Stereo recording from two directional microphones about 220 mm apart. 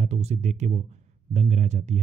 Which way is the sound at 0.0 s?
30° right (ahead or behind).